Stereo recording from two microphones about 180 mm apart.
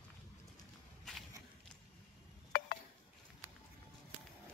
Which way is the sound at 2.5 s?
60° left (ahead or behind).